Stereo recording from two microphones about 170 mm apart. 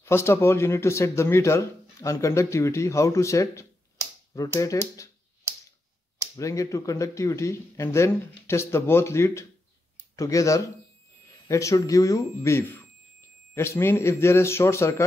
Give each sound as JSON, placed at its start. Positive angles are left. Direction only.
{"t": 0.0, "sound": "speech", "side_deg": 15}
{"t": 6.3, "sound": "speech", "side_deg": 20}